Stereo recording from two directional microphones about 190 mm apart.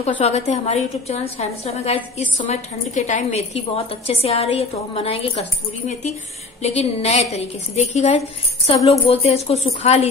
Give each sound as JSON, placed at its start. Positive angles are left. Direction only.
{"t": 0.0, "sound": "a woman's voice", "side_deg": 35}
{"t": 6.6, "sound": "a woman's voice", "side_deg": 35}